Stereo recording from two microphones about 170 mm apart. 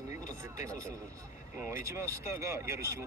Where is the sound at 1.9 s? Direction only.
15° right (ahead or behind).